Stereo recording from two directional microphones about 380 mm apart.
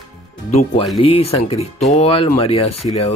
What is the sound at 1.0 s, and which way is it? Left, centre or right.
Speech, centre.